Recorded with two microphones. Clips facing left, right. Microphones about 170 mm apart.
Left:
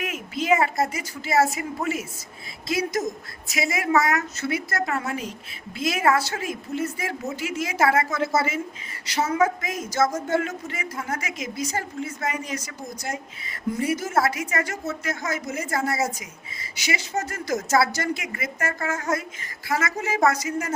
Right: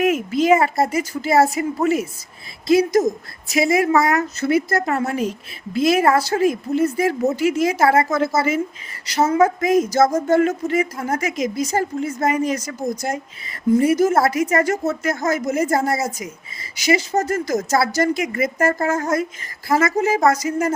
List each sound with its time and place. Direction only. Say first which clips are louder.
0.0 s a woman's voice: right 12 dB; 45° right (ahead or behind)